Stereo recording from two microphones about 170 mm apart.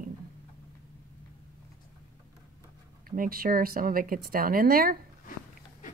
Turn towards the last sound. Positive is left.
turn(degrees=-60)  # may be behind; listen again after turning